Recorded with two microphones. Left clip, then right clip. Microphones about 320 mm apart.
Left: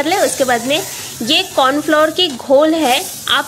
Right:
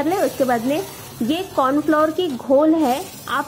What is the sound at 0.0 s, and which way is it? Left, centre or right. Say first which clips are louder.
Speech: left 5 dB; left.